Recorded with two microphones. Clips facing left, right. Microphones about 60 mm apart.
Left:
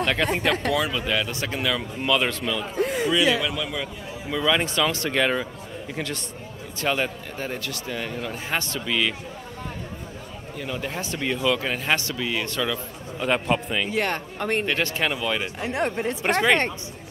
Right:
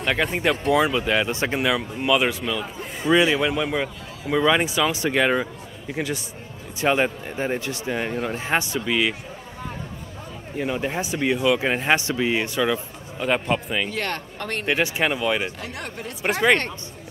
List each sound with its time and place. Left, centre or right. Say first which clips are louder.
0.0 s speech: even; centre
0.7 s speech: right 4 dB; right
2.0 s a man's voice: right 2 dB; centre
2.8 s a sound: left 9 dB; left
3.1 s a man's voice: right 8 dB; right; by 9.1 s centre
10.6 s a man's voice: right 5 dB; right
11.6 s speech: right 4 dB; right
13.2 s speech: even; centre
13.8 s speech: left 2 dB; centre
14.7 s a man's voice: right 3 dB; centre
15.6 s speech: left 8 dB; left
16.3 s speech: right 1 dB; centre